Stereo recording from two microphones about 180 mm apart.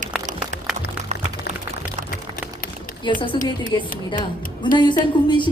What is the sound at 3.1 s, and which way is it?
A woman's voice, 25° left (ahead or behind).